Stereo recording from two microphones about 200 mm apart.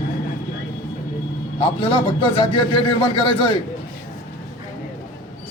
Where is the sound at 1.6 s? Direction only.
25° left (ahead or behind).